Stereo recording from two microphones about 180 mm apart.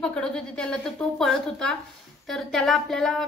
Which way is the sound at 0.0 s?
5° left (ahead or behind).